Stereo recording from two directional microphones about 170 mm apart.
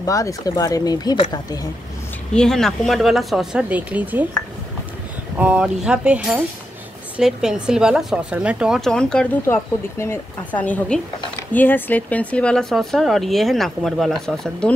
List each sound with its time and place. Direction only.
0.0 s speech: 20° left (ahead or behind)
2.3 s speech: 5° left (ahead or behind)
5.4 s speech: 5° right (ahead or behind)